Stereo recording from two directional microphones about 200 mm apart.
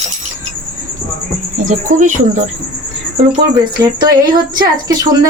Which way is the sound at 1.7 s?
40° right (ahead or behind).